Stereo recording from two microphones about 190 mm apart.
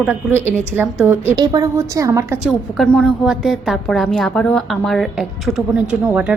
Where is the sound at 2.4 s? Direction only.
Centre (ahead or behind).